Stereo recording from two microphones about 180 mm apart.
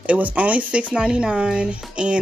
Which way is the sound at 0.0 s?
5° right (ahead or behind).